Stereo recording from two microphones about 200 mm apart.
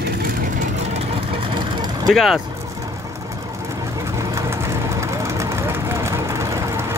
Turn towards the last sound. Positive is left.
turn(degrees=-15)  # may be behind; listen again after turning